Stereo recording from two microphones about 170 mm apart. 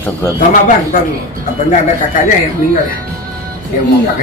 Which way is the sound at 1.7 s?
50° left (ahead or behind).